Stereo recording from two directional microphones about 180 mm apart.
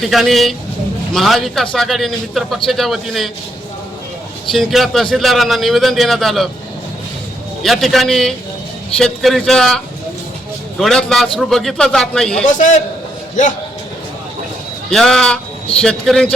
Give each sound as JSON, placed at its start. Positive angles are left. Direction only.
{"t": 0.0, "sound": "a man's voice", "side_deg": 0}
{"t": 4.5, "sound": "a man's voice", "side_deg": 0}
{"t": 7.6, "sound": "a man's voice", "side_deg": 0}
{"t": 12.5, "sound": "a man's voice", "side_deg": 45}
{"t": 14.8, "sound": "a man's voice", "side_deg": 5}